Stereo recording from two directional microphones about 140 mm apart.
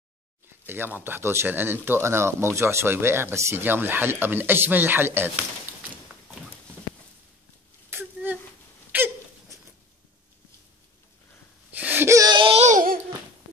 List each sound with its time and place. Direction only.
0.7 s speech: 15° right (ahead or behind)
7.9 s a sound: 15° right (ahead or behind)
11.8 s wail: 15° right (ahead or behind)
12.4 s babbling: 40° right (ahead or behind)
12.6 s babbling: 80° right